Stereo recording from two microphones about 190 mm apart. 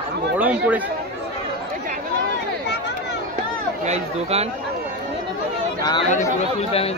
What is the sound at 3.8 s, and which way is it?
Speech, 35° right (ahead or behind).